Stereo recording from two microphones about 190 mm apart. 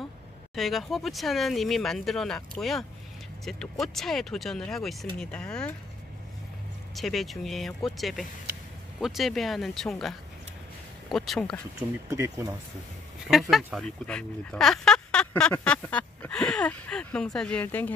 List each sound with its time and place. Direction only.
0.6 s speech: centre (ahead or behind)
7.0 s speech: centre (ahead or behind)
12.1 s speech: 15° right (ahead or behind)
13.3 s speech: centre (ahead or behind)